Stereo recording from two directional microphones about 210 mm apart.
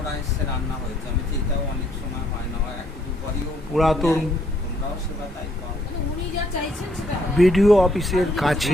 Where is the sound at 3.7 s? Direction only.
Centre (ahead or behind).